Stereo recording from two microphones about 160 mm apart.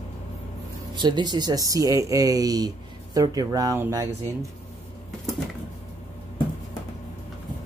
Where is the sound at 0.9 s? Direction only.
30° right (ahead or behind).